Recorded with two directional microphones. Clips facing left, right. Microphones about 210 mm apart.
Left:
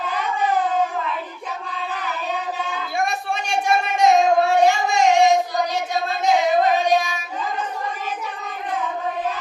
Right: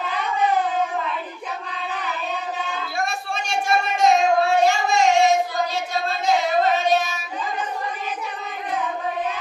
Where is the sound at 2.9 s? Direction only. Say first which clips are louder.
Left 4 dB; 20° left (ahead or behind).